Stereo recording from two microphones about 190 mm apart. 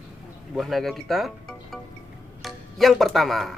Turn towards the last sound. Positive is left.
turn(degrees=0)  # may be behind; listen again after turning